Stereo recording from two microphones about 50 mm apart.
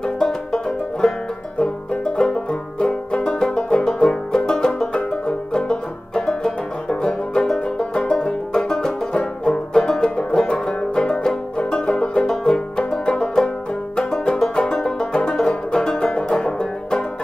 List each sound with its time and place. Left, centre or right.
0.0 s banjo: centre
3.1 s music: centre
13.9 s banjo: centre